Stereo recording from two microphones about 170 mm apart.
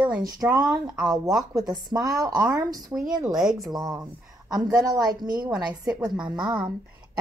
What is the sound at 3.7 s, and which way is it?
A woman's voice, 20° right (ahead or behind).